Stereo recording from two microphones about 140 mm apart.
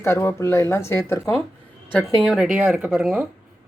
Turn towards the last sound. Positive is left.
turn(degrees=-5)  # may be behind; listen again after turning